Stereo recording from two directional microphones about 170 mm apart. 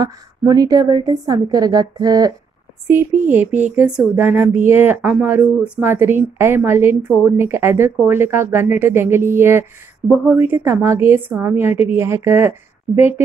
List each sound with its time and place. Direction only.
0.0 s a woman's voice: 20° right (ahead or behind)
2.9 s speech: 10° right (ahead or behind)